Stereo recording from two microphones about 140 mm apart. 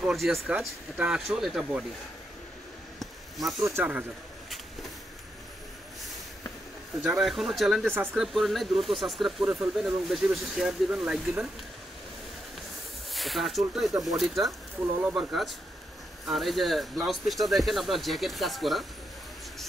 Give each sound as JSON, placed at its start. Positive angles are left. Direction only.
{"t": 0.0, "sound": "speech", "side_deg": 0}
{"t": 3.0, "sound": "a sound", "side_deg": 0}
{"t": 3.6, "sound": "speech", "side_deg": -15}
{"t": 7.0, "sound": "speech", "side_deg": 0}
{"t": 7.9, "sound": "speech", "side_deg": -15}
{"t": 8.2, "sound": "speech", "side_deg": 0}
{"t": 13.1, "sound": "speech", "side_deg": 0}
{"t": 14.8, "sound": "speech", "side_deg": -15}
{"t": 16.3, "sound": "speech", "side_deg": 0}